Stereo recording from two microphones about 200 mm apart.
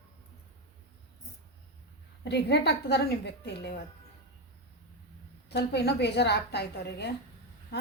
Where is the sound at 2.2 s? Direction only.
55° left (ahead or behind).